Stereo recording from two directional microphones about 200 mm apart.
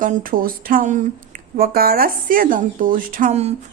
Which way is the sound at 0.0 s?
45° right (ahead or behind).